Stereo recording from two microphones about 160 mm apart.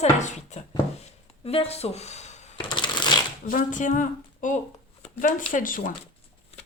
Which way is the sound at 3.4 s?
55° left (ahead or behind).